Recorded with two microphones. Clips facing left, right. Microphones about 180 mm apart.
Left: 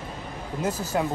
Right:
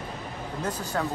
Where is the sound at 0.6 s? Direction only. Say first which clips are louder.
Left 4 dB; 5° left (ahead or behind).